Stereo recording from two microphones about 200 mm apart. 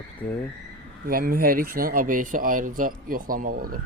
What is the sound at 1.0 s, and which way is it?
Speech, 45° right (ahead or behind).